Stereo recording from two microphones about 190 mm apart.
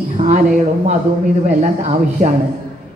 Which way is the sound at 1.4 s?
35° right (ahead or behind).